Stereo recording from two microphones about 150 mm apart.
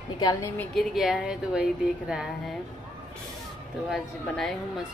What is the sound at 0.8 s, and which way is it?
A woman's voice, centre (ahead or behind).